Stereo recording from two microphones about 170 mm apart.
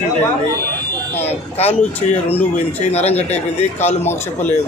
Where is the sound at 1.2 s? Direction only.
40° left (ahead or behind).